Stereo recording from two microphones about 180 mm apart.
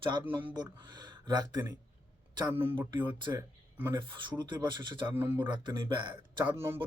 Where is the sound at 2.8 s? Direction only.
25° right (ahead or behind).